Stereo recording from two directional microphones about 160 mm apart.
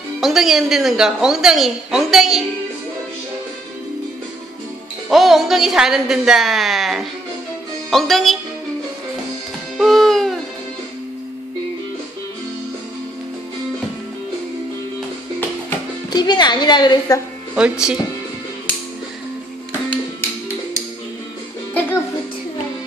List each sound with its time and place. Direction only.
0.2 s a woman's voice: centre (ahead or behind)
5.1 s a woman's voice: centre (ahead or behind)
9.8 s music: centre (ahead or behind)
16.1 s a woman's voice: 25° left (ahead or behind)
17.6 s a woman's voice: 5° right (ahead or behind)